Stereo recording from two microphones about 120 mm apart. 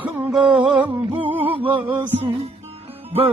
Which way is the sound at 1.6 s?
45° right (ahead or behind).